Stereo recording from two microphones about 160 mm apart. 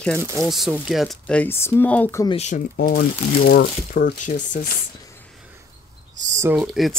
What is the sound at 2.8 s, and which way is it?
Speech, 80° left.